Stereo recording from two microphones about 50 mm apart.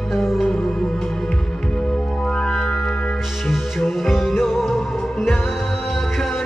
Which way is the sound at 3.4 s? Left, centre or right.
Centre.